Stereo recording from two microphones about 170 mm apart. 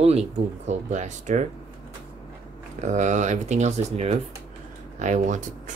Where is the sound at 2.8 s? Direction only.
45° right (ahead or behind).